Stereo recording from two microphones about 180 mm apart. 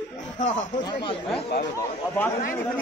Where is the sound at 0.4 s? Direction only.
45° left (ahead or behind).